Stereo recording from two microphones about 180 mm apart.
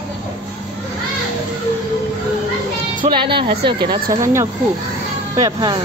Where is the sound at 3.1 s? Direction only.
30° right (ahead or behind).